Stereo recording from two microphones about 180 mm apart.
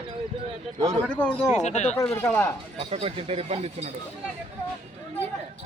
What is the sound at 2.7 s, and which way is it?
Speech, 30° right (ahead or behind).